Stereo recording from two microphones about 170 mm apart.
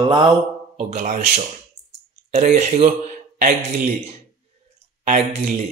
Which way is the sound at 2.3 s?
40° right (ahead or behind).